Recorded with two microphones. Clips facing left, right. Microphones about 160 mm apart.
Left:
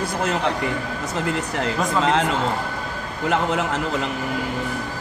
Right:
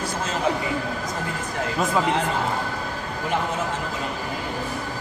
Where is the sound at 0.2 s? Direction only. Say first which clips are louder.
Left 5 dB; 65° left (ahead or behind).